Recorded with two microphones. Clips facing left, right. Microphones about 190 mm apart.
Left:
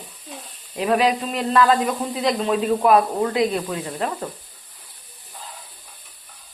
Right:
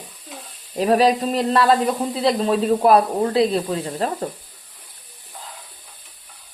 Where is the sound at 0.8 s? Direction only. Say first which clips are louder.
Right 3 dB; 35° right (ahead or behind).